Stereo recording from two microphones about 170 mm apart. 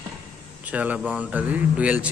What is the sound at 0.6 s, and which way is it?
A man's voice, 10° right (ahead or behind).